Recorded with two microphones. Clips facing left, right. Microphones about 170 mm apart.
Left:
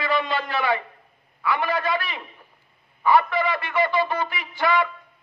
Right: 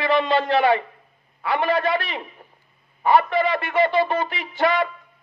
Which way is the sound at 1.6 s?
30° right (ahead or behind).